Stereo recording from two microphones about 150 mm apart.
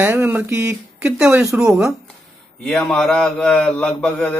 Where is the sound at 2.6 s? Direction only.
Centre (ahead or behind).